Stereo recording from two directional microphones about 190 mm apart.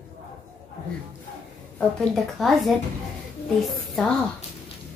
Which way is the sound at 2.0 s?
Centre (ahead or behind).